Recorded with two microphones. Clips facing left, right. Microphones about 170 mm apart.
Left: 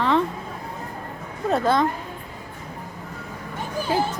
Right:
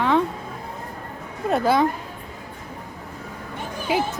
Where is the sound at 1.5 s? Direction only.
5° right (ahead or behind).